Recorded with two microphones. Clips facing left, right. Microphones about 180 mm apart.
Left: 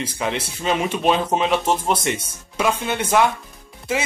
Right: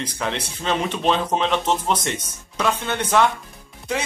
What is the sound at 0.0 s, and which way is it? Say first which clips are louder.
Speech: left 2 dB; 5° left (ahead or behind).